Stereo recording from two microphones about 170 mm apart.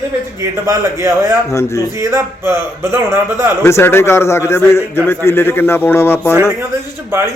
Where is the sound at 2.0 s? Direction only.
15° right (ahead or behind).